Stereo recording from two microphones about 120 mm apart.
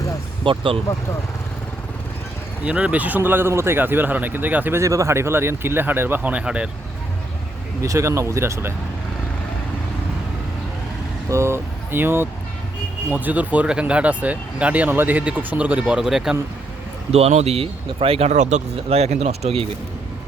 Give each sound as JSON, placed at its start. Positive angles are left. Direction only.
{"t": 0.4, "sound": "speech", "side_deg": -45}
{"t": 2.6, "sound": "speech", "side_deg": -10}
{"t": 7.8, "sound": "speech", "side_deg": -25}
{"t": 11.3, "sound": "speech", "side_deg": -25}
{"t": 17.1, "sound": "speech", "side_deg": -60}